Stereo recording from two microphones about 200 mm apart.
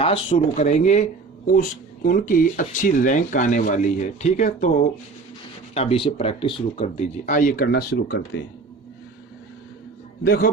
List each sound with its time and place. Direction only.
0.0 s speech: 30° left (ahead or behind)
2.0 s speech: 45° left (ahead or behind)
10.2 s a man's voice: 50° left (ahead or behind)